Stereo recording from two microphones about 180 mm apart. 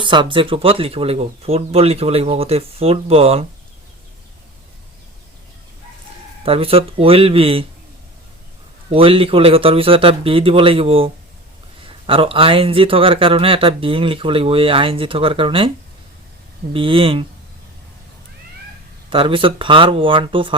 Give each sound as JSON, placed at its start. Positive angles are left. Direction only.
{"t": 0.0, "sound": "speech", "side_deg": -25}
{"t": 6.4, "sound": "speech", "side_deg": -30}
{"t": 8.9, "sound": "speech", "side_deg": -30}
{"t": 16.7, "sound": "speech", "side_deg": -30}
{"t": 19.1, "sound": "speech", "side_deg": -30}